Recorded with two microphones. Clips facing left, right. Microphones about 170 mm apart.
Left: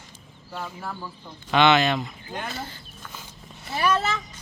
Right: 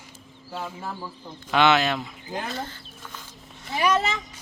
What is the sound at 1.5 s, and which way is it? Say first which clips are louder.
Speech: left 1 dB; 5° right (ahead or behind).